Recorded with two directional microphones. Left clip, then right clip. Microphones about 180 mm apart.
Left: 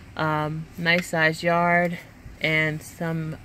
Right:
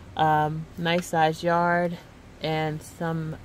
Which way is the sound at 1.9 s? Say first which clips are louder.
Left 4 dB; 5° left (ahead or behind).